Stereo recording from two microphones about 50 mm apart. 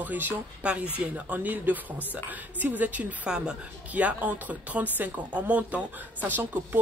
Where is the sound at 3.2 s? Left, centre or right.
Centre.